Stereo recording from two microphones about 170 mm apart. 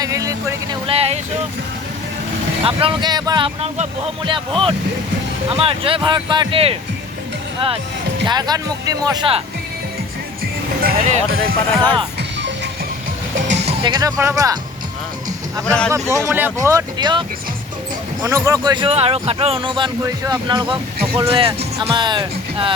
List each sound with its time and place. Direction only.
0.0 s speech: 20° right (ahead or behind)
0.9 s speech: 35° right (ahead or behind)
2.6 s speech: 30° right (ahead or behind)
8.3 s speech: 25° right (ahead or behind)
10.4 s speech: 60° right (ahead or behind)
11.7 s speech: 10° left (ahead or behind)
13.7 s music: 25° right (ahead or behind)
14.2 s speech: 20° right (ahead or behind)
16.0 s speech: 15° right (ahead or behind)